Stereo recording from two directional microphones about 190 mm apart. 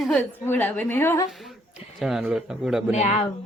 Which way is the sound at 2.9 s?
35° left (ahead or behind).